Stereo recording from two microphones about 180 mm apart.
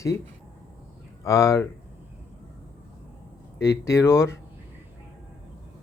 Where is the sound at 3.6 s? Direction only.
15° left (ahead or behind).